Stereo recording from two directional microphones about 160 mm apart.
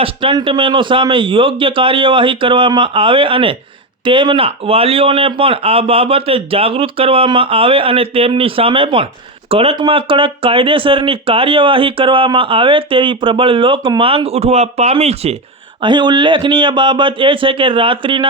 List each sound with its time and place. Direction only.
0.0 s speech: 35° right (ahead or behind)
15.8 s speech: 30° right (ahead or behind)